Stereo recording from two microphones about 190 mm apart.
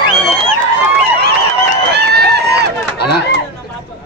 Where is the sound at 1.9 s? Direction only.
60° right (ahead or behind).